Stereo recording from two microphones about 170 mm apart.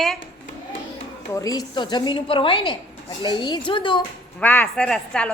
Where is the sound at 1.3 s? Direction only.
20° left (ahead or behind).